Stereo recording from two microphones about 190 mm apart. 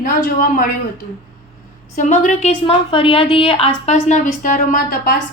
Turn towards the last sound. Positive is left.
turn(degrees=50)  # may be behind; listen again after turning